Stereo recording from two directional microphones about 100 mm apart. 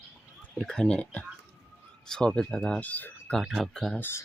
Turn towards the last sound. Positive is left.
turn(degrees=5)  # may be behind; listen again after turning